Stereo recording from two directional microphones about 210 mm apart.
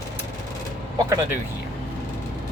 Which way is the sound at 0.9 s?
15° right (ahead or behind).